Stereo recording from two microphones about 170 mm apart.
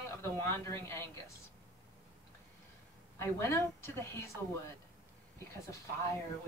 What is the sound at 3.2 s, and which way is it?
A woman's voice, 15° left (ahead or behind).